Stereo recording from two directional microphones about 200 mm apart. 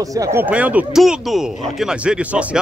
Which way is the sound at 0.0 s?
15° right (ahead or behind).